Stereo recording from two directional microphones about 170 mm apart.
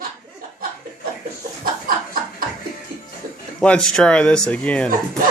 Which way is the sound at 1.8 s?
55° right (ahead or behind).